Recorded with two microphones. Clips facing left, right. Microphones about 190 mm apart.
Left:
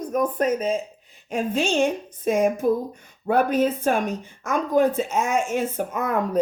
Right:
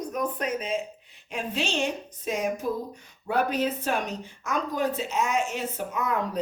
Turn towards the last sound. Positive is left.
turn(degrees=50)  # may be behind; listen again after turning